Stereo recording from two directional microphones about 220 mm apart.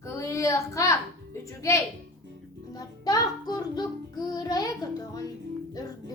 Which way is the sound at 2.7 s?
15° left (ahead or behind).